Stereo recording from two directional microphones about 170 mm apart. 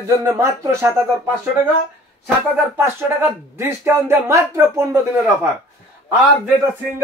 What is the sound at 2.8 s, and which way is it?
Speech, 15° right (ahead or behind).